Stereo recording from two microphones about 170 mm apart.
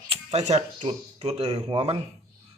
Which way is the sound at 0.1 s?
35° right (ahead or behind).